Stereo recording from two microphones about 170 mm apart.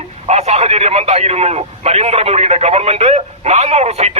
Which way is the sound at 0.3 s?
40° right (ahead or behind).